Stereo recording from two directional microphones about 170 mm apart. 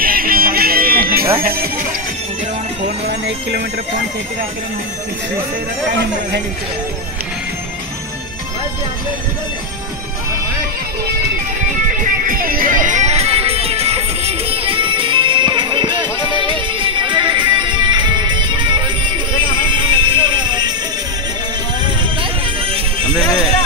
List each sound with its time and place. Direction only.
0.0 s music: 60° right (ahead or behind)
1.4 s speech: 60° right (ahead or behind)
3.1 s speech: 75° right (ahead or behind)
12.0 s music: 55° right (ahead or behind); by 20.7 s 25° right (ahead or behind)
21.8 s music: 30° right (ahead or behind)